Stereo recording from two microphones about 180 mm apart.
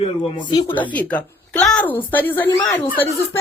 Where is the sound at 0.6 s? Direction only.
10° left (ahead or behind).